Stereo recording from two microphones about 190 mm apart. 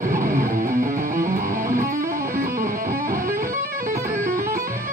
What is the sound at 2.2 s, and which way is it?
Music, 45° right (ahead or behind).